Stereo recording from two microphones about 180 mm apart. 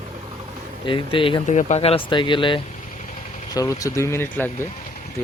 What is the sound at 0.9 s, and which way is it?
Speech, 30° left (ahead or behind).